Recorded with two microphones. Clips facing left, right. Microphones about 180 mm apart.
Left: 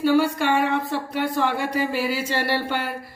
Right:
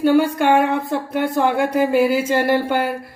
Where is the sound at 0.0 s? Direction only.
55° right (ahead or behind).